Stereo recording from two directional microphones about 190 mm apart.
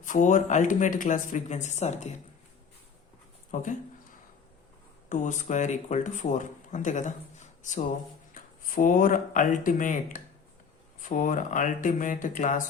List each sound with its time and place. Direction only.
0.0 s speech: 40° left (ahead or behind)
3.5 s speech: 40° left (ahead or behind)
5.0 s speech: 40° left (ahead or behind)